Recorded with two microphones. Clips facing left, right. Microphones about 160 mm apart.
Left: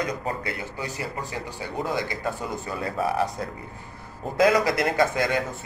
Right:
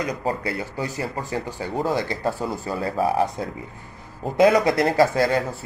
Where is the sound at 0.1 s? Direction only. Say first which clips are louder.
Right 4 dB; 30° right (ahead or behind).